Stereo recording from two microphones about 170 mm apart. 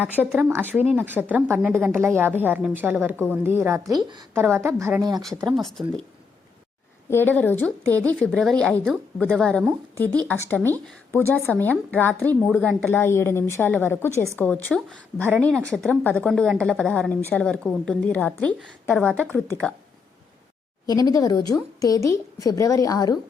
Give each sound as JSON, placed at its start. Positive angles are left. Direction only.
{"t": 0.0, "sound": "a woman's voice", "side_deg": -10}
{"t": 5.5, "sound": "a woman's voice", "side_deg": 0}
{"t": 7.1, "sound": "a woman's voice", "side_deg": 10}
{"t": 20.8, "sound": "speech", "side_deg": 20}